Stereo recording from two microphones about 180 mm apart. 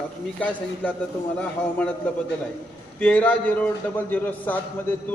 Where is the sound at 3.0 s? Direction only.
10° left (ahead or behind).